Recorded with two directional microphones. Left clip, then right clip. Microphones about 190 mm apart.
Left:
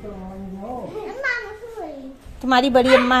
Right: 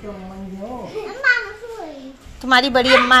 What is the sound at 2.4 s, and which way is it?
Speech, 25° left (ahead or behind).